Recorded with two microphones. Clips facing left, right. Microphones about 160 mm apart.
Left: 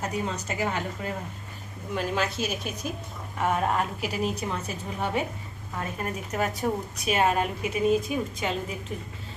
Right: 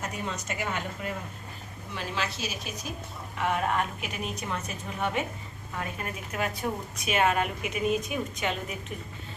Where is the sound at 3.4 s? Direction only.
40° left (ahead or behind).